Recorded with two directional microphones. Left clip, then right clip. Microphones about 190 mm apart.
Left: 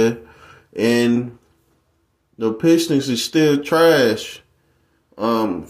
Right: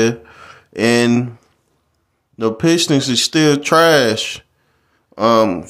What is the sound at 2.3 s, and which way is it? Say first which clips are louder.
Mantra: right 1 dB; 20° right (ahead or behind).